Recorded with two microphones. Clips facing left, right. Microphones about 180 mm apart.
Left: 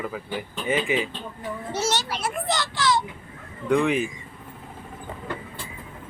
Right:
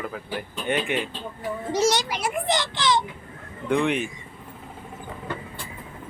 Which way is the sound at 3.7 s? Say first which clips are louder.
Left 2 dB; centre (ahead or behind).